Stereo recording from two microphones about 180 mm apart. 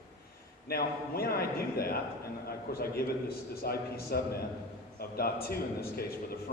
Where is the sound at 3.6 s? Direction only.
60° left (ahead or behind).